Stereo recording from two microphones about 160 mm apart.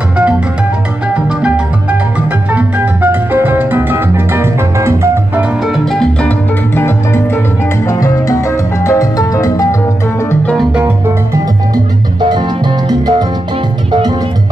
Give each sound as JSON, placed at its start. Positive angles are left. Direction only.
{"t": 1.1, "sound": "music", "side_deg": -5}
{"t": 5.9, "sound": "music", "side_deg": 5}
{"t": 7.8, "sound": "music", "side_deg": 20}
{"t": 10.4, "sound": "music", "side_deg": 0}
{"t": 11.7, "sound": "music", "side_deg": -30}